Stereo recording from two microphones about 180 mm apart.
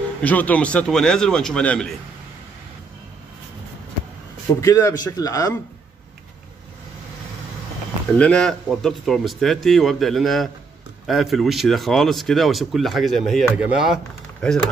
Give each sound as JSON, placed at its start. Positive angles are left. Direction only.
{"t": 0.2, "sound": "speech", "side_deg": 10}
{"t": 4.6, "sound": "a man's voice", "side_deg": 15}
{"t": 8.2, "sound": "speech", "side_deg": 5}